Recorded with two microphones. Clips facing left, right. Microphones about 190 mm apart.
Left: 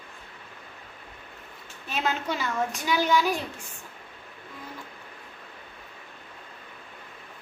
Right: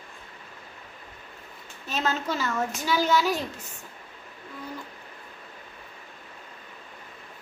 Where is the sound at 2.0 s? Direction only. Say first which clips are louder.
Right 1 dB; 15° left (ahead or behind).